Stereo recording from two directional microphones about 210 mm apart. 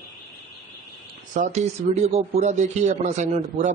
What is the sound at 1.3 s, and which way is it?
Speech, 35° right (ahead or behind).